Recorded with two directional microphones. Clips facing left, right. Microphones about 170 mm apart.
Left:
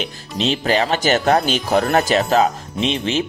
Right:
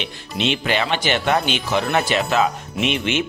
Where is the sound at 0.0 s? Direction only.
35° left (ahead or behind).